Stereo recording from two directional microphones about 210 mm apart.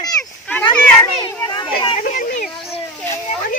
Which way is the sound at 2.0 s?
40° left (ahead or behind).